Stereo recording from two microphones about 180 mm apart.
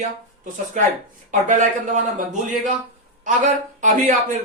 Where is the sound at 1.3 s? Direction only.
45° right (ahead or behind).